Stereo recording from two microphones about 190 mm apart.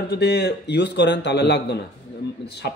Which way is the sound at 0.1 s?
60° left (ahead or behind).